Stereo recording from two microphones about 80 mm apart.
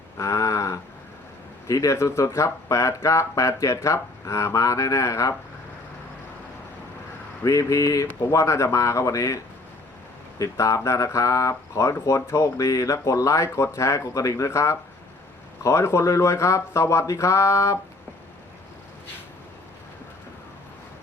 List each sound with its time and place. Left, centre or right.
0.2 s a sound: left
1.6 s speech: left
7.4 s speech: left